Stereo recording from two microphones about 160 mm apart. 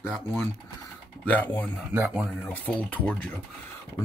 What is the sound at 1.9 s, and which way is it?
Speech, 10° right (ahead or behind).